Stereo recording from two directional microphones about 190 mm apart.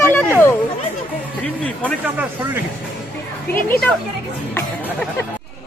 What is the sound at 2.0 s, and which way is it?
Speech, 10° right (ahead or behind).